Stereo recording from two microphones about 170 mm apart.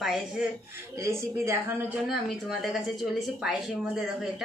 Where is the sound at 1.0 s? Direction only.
15° right (ahead or behind).